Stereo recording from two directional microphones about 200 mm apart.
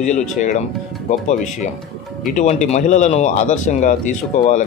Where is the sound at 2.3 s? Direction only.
35° left (ahead or behind).